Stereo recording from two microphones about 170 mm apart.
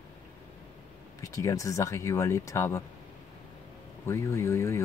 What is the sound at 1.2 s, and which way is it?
Speech, 20° left (ahead or behind).